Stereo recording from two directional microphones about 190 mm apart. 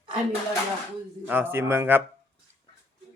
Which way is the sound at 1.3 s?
10° right (ahead or behind).